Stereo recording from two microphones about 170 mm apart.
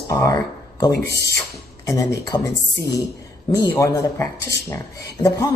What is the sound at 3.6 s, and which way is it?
Speech, 20° left (ahead or behind).